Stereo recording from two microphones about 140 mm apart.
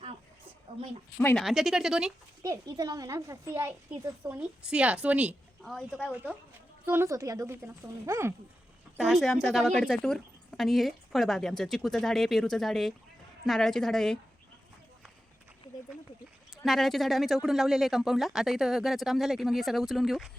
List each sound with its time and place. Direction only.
1.4 s speech: centre (ahead or behind)
2.4 s a woman's voice: 25° right (ahead or behind); by 6.0 s 5° right (ahead or behind)
6.8 s speech: 15° right (ahead or behind)
9.0 s speech: centre (ahead or behind)
16.6 s speech: centre (ahead or behind)